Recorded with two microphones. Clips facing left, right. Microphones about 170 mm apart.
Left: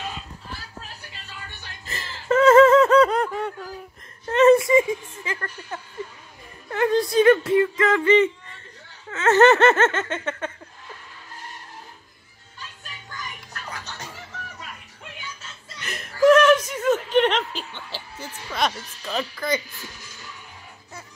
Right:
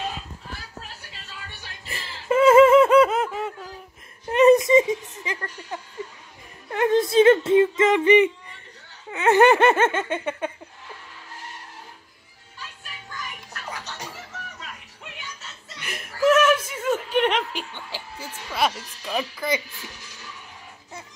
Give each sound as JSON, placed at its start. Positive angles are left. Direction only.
{"t": 1.9, "sound": "snicker", "side_deg": -10}
{"t": 4.3, "sound": "music", "side_deg": -15}
{"t": 6.7, "sound": "a sound", "side_deg": -20}
{"t": 9.1, "sound": "giggle", "side_deg": -15}
{"t": 15.8, "sound": "chuckle", "side_deg": -10}